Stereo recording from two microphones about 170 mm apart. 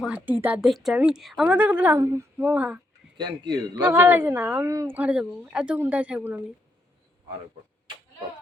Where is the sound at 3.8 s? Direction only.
10° right (ahead or behind).